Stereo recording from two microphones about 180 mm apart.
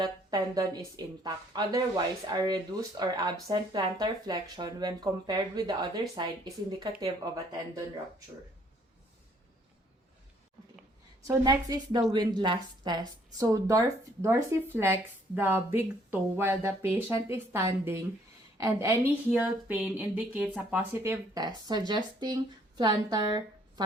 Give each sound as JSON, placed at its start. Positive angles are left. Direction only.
{"t": 0.0, "sound": "speech", "side_deg": -20}
{"t": 11.2, "sound": "a woman's voice", "side_deg": -20}